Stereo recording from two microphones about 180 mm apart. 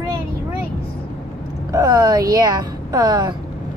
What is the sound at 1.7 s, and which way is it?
A woman's voice, 20° right (ahead or behind).